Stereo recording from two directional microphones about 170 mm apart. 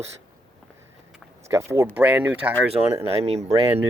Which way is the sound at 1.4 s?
15° right (ahead or behind).